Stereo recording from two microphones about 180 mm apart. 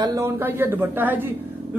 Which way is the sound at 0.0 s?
15° right (ahead or behind).